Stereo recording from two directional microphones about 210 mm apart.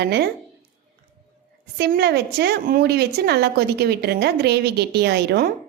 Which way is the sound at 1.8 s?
50° right (ahead or behind).